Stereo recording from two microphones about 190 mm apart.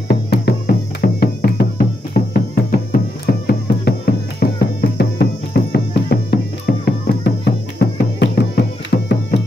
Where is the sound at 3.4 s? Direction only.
55° left (ahead or behind).